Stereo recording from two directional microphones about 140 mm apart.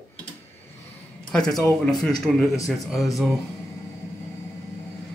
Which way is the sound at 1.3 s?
5° left (ahead or behind).